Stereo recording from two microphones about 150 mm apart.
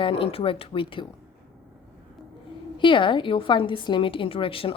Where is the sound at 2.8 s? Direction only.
35° left (ahead or behind).